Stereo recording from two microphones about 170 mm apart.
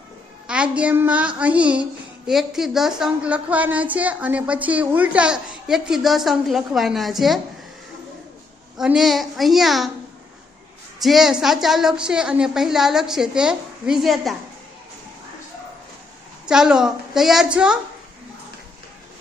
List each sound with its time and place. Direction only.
0.4 s a woman's voice: 5° right (ahead or behind)
8.8 s a woman's voice: centre (ahead or behind)
11.0 s a woman's voice: centre (ahead or behind)
16.5 s a woman's voice: 5° right (ahead or behind)